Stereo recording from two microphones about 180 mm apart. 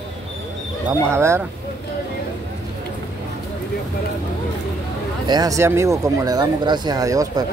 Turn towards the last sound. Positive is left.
turn(degrees=-20)  # may be behind; listen again after turning